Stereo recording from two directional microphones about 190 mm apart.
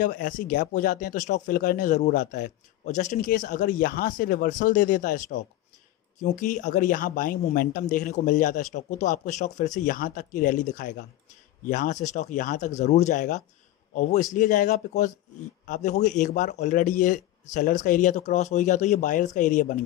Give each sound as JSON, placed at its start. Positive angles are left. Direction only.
{"t": 0.0, "sound": "speech", "side_deg": 45}